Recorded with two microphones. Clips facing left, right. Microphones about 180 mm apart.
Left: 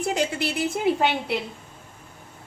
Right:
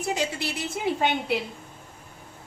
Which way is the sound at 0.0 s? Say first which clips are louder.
Left 3 dB; 55° left (ahead or behind).